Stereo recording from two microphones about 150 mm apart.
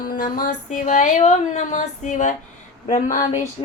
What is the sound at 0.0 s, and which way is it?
Female singing, 70° left (ahead or behind).